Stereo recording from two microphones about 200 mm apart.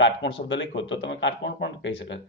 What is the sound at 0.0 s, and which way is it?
Speech, 65° left (ahead or behind).